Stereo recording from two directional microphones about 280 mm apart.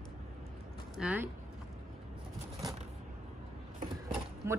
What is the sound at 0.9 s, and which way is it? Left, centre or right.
Speech, centre.